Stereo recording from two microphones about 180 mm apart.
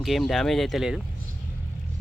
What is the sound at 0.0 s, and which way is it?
Speech, centre (ahead or behind).